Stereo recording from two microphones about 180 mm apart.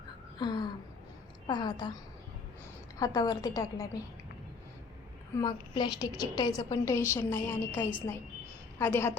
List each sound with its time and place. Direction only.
0.3 s a sound: 25° left (ahead or behind)
1.5 s a woman's voice: 25° left (ahead or behind)
3.0 s a woman's voice: 20° left (ahead or behind)
5.4 s a woman's voice: 25° left (ahead or behind)